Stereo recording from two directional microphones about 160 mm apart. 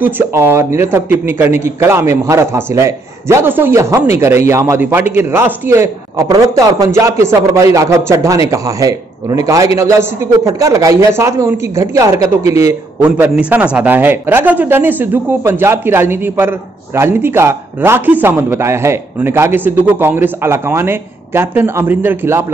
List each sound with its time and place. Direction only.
0.0 s a man's voice: 15° right (ahead or behind)